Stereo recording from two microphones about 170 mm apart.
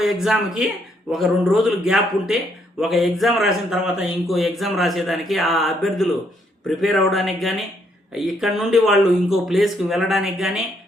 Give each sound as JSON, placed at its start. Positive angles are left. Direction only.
{"t": 0.0, "sound": "a man's voice", "side_deg": 0}